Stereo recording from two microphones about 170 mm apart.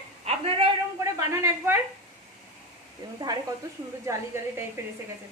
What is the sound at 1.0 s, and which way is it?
Speech, 15° right (ahead or behind).